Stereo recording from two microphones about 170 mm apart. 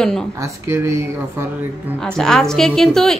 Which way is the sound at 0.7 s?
15° right (ahead or behind).